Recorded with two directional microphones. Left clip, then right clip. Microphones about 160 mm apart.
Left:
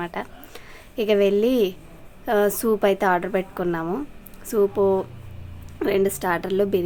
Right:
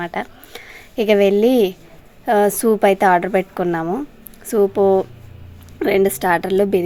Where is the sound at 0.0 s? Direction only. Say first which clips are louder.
Right 5 dB; 30° right (ahead or behind).